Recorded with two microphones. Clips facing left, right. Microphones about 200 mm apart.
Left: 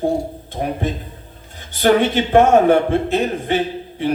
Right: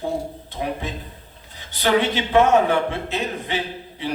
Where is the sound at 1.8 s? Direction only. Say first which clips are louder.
Left 5 dB; 50° left (ahead or behind).